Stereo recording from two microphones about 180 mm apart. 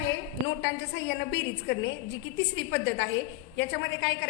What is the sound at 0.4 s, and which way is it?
A woman's voice, 70° left (ahead or behind).